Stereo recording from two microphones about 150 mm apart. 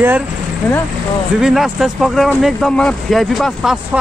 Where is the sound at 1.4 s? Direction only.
Centre (ahead or behind).